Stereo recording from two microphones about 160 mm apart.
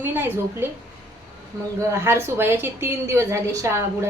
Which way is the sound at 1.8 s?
15° right (ahead or behind).